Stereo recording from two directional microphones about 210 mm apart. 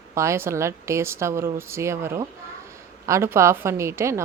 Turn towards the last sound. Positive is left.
turn(degrees=-15)  # may be behind; listen again after turning